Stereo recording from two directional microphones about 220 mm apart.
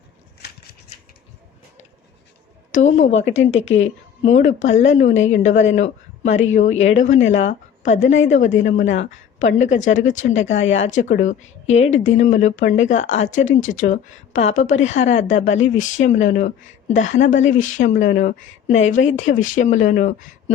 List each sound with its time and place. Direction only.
3.8 s a man's voice: 30° left (ahead or behind)